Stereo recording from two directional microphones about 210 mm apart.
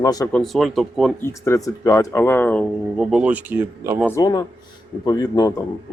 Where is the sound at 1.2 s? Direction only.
15° left (ahead or behind); by 4.0 s 10° right (ahead or behind).